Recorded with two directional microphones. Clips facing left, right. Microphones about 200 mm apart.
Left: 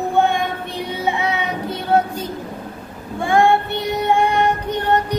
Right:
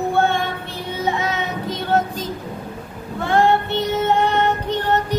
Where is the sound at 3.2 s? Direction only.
15° left (ahead or behind).